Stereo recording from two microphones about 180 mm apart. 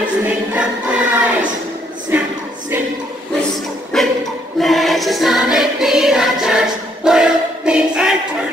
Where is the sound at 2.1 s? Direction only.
10° right (ahead or behind).